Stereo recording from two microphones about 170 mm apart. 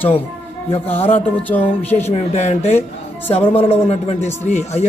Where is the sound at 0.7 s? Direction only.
35° left (ahead or behind).